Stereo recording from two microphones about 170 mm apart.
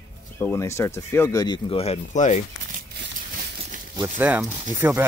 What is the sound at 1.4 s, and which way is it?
Speech, 30° left (ahead or behind).